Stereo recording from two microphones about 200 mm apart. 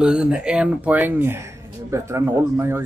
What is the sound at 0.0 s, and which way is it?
Speech, 5° right (ahead or behind).